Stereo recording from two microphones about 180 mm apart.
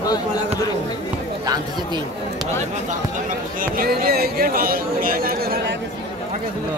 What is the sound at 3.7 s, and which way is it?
Speech, 55° right (ahead or behind).